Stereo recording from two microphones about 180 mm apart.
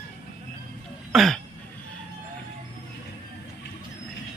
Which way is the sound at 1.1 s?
Centre (ahead or behind).